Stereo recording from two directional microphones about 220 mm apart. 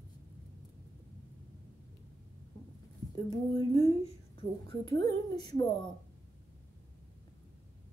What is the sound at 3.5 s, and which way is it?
A woman's voice, 25° left (ahead or behind).